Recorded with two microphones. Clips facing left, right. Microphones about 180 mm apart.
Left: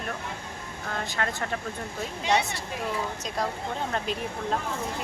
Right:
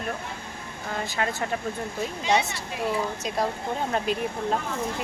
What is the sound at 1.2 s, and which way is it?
Speech, 10° right (ahead or behind).